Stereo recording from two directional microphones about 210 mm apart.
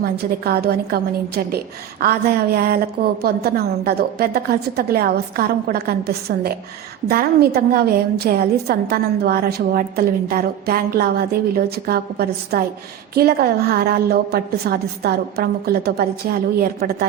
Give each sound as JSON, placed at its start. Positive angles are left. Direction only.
{"t": 0.0, "sound": "a woman's voice", "side_deg": -50}